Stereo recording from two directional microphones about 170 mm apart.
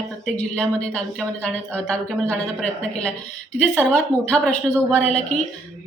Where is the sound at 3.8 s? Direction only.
5° left (ahead or behind).